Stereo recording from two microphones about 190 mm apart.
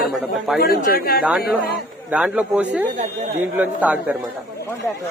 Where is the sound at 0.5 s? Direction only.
55° left (ahead or behind).